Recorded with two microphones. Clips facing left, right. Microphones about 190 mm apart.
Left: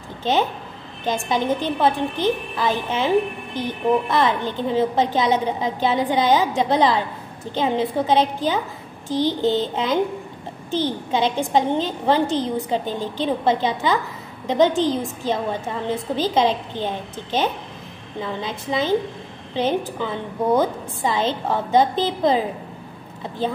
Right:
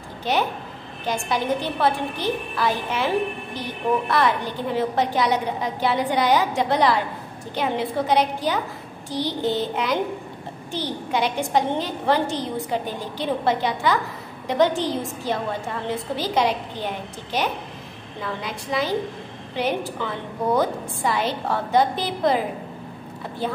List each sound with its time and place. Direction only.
0.2 s a woman's voice: 20° left (ahead or behind)
4.1 s a woman's voice: 20° left (ahead or behind)
10.7 s a woman's voice: 20° left (ahead or behind)